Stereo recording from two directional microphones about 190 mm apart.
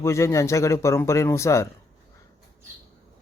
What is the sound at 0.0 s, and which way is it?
Speech, 15° left (ahead or behind).